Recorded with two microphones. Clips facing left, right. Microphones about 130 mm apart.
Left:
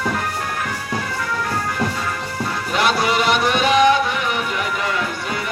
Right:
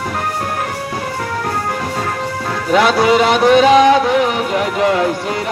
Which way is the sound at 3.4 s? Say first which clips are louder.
Right 7 dB; 90° right.